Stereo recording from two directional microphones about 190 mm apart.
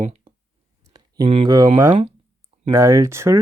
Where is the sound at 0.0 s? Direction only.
35° right (ahead or behind).